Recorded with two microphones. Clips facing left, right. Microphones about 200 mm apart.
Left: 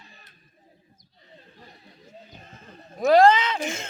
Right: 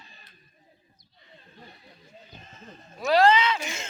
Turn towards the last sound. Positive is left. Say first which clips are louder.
# even
turn(degrees=50)  # may be behind; listen again after turning